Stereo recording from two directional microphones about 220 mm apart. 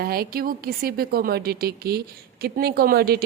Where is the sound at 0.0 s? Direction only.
45° right (ahead or behind).